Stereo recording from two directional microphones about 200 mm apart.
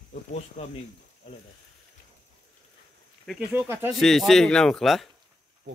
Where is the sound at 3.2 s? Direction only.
Centre (ahead or behind).